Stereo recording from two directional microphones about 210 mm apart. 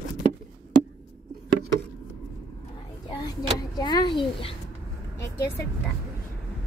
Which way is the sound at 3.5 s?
20° left (ahead or behind).